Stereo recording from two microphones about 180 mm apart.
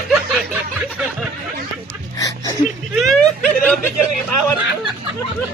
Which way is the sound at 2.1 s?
20° left (ahead or behind).